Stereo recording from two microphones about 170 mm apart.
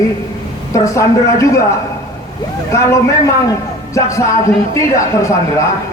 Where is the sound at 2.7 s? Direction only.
15° left (ahead or behind).